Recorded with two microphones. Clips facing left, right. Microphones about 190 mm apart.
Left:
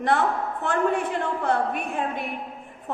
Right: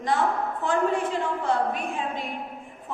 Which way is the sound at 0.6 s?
60° left (ahead or behind).